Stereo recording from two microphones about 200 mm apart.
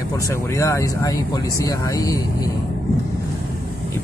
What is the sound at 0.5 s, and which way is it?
Speech, 15° left (ahead or behind).